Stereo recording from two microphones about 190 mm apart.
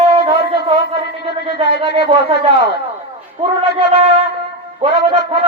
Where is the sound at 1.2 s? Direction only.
30° right (ahead or behind).